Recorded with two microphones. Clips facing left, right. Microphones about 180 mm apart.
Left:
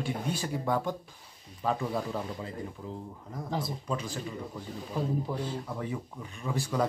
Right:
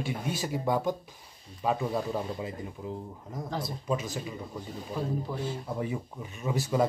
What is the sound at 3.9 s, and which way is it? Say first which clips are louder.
Speech: right 6 dB; 10° right (ahead or behind).